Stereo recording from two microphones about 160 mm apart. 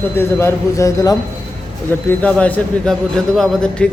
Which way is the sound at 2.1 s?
10° left (ahead or behind).